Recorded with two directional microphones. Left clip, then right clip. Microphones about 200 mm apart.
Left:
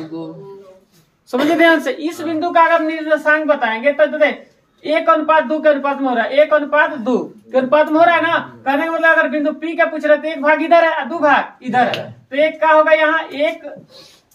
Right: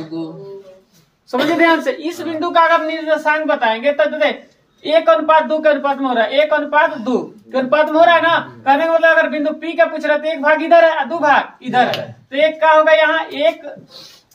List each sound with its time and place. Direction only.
0.1 s speech: 35° right (ahead or behind)
1.6 s a woman's voice: 30° left (ahead or behind); by 13.5 s 10° left (ahead or behind)